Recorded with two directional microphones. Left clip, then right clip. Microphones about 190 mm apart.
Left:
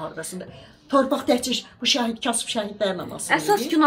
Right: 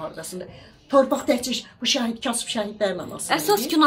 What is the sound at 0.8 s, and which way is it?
Speech, centre (ahead or behind).